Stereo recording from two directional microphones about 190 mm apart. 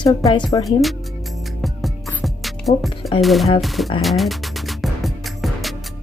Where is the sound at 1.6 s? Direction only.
Centre (ahead or behind).